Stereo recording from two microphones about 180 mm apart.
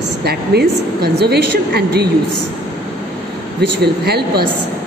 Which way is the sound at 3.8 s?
65° right (ahead or behind).